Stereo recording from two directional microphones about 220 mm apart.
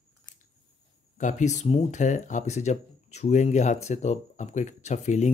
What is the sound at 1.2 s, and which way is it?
Speech, 35° left (ahead or behind).